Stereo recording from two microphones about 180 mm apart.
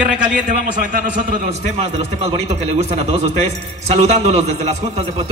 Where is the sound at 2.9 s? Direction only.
35° right (ahead or behind).